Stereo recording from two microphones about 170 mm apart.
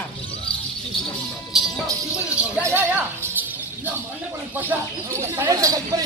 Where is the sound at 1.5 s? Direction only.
Centre (ahead or behind).